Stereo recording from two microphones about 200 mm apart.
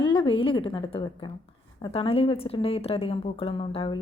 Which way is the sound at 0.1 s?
25° left (ahead or behind).